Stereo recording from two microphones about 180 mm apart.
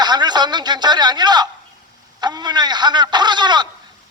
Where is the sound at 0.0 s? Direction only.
25° right (ahead or behind).